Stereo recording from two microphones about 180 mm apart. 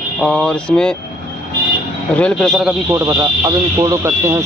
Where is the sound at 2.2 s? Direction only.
5° left (ahead or behind).